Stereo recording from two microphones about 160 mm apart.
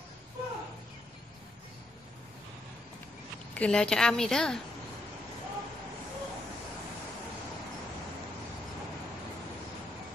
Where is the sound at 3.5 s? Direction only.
5° left (ahead or behind).